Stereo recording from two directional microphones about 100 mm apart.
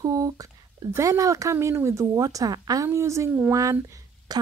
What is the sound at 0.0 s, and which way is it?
Speech, 35° right (ahead or behind).